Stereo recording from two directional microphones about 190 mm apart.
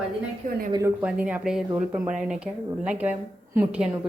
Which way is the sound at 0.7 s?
15° right (ahead or behind).